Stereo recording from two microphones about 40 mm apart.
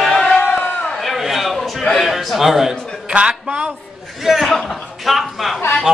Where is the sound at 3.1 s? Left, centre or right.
Right.